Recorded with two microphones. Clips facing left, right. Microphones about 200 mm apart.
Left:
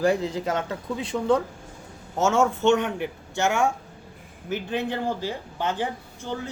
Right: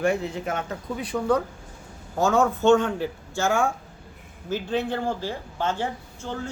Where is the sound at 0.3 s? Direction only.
30° left (ahead or behind).